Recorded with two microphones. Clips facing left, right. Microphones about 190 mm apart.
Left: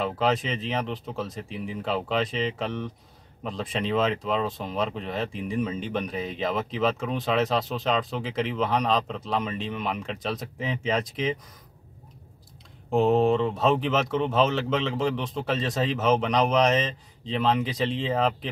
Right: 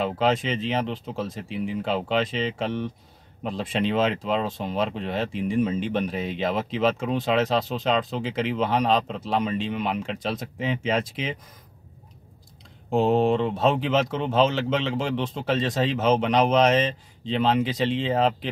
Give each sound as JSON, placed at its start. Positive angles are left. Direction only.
{"t": 0.0, "sound": "speech", "side_deg": 0}
{"t": 13.1, "sound": "speech", "side_deg": -30}
{"t": 13.4, "sound": "speech", "side_deg": 0}